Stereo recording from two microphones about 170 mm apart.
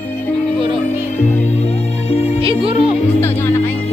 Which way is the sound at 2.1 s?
40° left (ahead or behind).